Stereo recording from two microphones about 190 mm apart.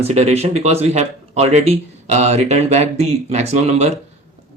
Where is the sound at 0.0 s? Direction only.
35° right (ahead or behind).